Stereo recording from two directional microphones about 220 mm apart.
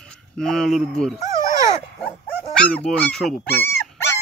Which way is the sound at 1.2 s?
15° right (ahead or behind).